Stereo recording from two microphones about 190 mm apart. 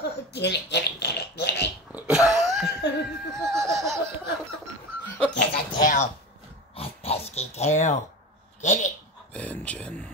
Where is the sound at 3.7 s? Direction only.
Centre (ahead or behind).